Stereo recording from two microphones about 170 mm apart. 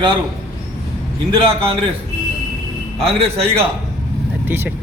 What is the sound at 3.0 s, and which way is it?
Speech, 35° right (ahead or behind).